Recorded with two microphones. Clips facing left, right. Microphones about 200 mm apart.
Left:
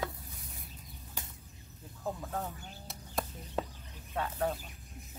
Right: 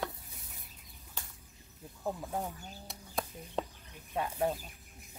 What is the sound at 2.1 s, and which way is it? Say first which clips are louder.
Speech: right 1 dB; 15° right (ahead or behind).